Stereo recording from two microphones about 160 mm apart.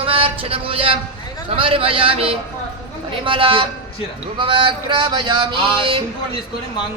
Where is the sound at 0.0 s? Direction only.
35° right (ahead or behind).